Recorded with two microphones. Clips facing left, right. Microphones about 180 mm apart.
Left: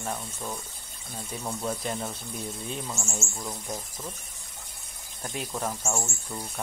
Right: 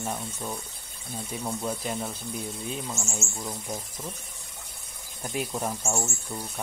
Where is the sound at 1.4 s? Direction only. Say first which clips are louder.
Even; centre (ahead or behind).